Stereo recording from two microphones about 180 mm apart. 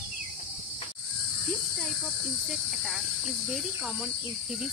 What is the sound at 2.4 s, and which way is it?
Speech, centre (ahead or behind).